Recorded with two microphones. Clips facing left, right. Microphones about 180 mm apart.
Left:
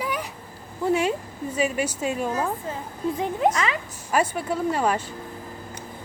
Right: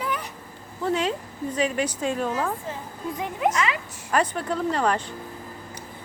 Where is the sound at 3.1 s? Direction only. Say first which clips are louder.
Left 1 dB; 35° left (ahead or behind).